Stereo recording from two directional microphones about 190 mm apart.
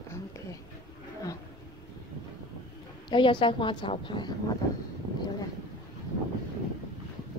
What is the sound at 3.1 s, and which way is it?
A woman's voice, 25° left (ahead or behind).